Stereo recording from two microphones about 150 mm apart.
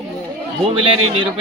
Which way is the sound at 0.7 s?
35° right (ahead or behind).